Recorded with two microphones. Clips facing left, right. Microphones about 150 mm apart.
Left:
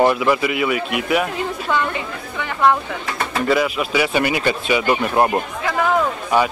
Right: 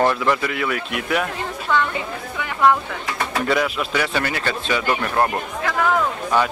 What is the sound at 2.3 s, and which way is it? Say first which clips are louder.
Speech: left 1 dB; 5° right (ahead or behind).